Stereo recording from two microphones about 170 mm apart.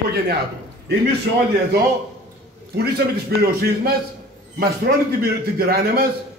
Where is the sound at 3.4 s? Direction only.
65° right (ahead or behind).